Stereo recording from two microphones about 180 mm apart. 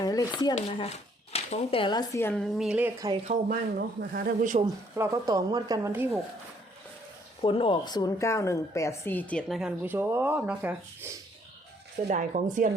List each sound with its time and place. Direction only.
0.0 s speech: 20° left (ahead or behind)
0.5 s speech: 35° left (ahead or behind)
2.2 s a woman's voice: 5° left (ahead or behind)
3.5 s speech: 55° right (ahead or behind)
4.6 s a woman's voice: 20° right (ahead or behind)
7.4 s a woman's voice: 30° left (ahead or behind); by 11.1 s 10° right (ahead or behind)
12.0 s speech: 45° right (ahead or behind)